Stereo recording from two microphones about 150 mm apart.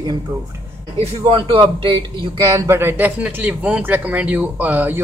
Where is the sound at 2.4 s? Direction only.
20° right (ahead or behind).